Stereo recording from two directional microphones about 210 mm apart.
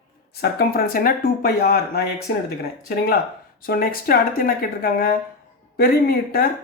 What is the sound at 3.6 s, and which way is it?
Speech, 45° left (ahead or behind).